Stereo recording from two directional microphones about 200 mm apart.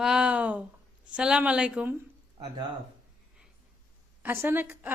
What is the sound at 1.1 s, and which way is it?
Speech, 5° right (ahead or behind).